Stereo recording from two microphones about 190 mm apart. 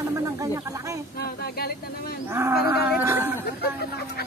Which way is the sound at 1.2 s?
55° left (ahead or behind).